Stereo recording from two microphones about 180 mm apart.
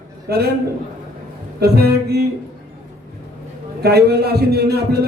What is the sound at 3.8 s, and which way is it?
A man's voice, 60° right (ahead or behind).